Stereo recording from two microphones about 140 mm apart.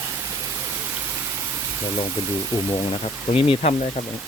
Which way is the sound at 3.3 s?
45° left (ahead or behind).